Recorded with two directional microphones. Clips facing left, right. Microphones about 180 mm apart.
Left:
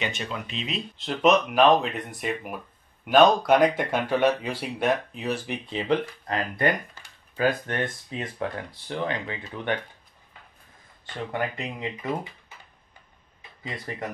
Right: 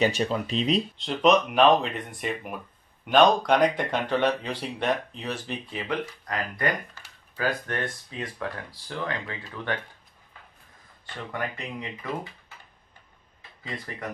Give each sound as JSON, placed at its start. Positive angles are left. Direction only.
{"t": 0.0, "sound": "speech", "side_deg": -35}
{"t": 0.9, "sound": "speech", "side_deg": 0}
{"t": 5.7, "sound": "speech", "side_deg": 25}
{"t": 11.3, "sound": "speech", "side_deg": 25}